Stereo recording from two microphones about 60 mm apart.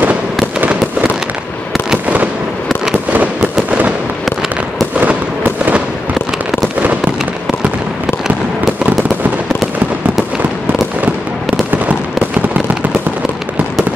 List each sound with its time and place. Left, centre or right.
4.9 s fireworks: right